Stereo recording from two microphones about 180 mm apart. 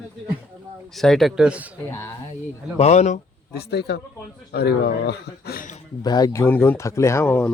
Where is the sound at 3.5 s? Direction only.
65° left (ahead or behind).